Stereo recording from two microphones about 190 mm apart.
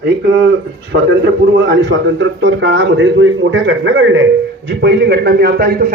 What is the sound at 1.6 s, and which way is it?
A man's voice, 70° right (ahead or behind).